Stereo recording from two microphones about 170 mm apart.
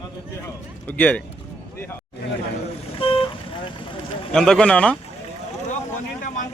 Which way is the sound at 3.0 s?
30° left (ahead or behind).